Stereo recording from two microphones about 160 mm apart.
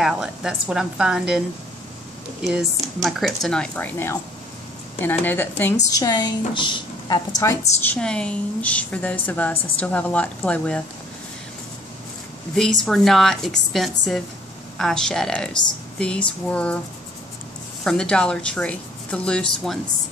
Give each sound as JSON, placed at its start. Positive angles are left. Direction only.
{"t": 0.0, "sound": "speech", "side_deg": -5}
{"t": 2.4, "sound": "a woman's voice", "side_deg": 0}
{"t": 5.9, "sound": "a woman's voice", "side_deg": 25}
{"t": 7.8, "sound": "a woman's voice", "side_deg": 10}
{"t": 12.5, "sound": "a woman's voice", "side_deg": 0}
{"t": 17.8, "sound": "speech", "side_deg": 5}